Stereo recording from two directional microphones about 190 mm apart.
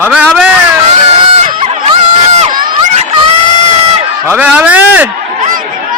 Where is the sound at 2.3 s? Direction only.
30° right (ahead or behind).